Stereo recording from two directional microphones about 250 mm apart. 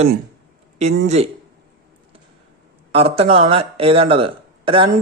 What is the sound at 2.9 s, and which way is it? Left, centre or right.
Speech, right.